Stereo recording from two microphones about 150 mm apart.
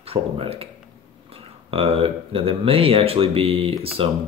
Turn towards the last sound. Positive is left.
turn(degrees=-40)  # may be behind; listen again after turning